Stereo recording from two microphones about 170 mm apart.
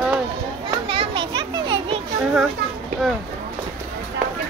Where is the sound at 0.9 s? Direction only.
30° right (ahead or behind).